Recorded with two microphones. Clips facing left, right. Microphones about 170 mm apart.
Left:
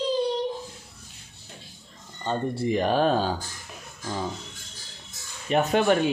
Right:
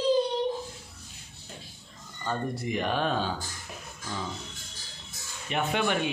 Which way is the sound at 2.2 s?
30° left (ahead or behind).